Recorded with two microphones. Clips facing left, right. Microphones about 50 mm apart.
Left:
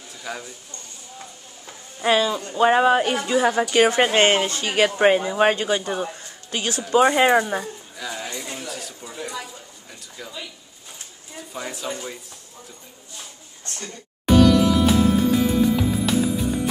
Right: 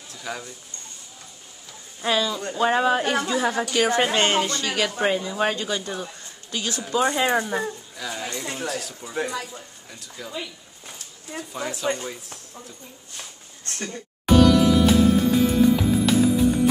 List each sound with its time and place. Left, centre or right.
0.1 s speech: centre
2.0 s speech: left
3.1 s speech: centre
4.0 s speech: left
7.9 s a sound: centre
8.6 s speech: centre
11.5 s speech: centre
13.8 s music: centre